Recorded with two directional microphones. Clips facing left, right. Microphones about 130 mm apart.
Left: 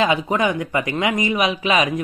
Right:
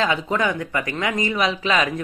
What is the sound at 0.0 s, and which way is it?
Speech, 15° left (ahead or behind).